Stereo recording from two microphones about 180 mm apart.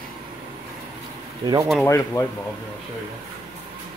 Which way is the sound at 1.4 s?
20° right (ahead or behind).